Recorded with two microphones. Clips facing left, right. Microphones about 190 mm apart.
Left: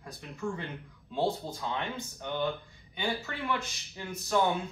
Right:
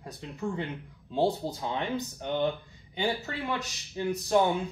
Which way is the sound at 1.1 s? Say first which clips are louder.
Right 3 dB; 35° right (ahead or behind).